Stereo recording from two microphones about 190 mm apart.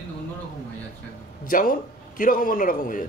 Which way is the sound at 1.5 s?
45° left (ahead or behind).